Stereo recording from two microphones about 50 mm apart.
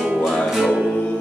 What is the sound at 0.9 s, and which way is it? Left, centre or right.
Music, centre.